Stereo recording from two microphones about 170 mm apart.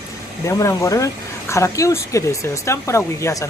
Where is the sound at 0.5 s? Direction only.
20° left (ahead or behind).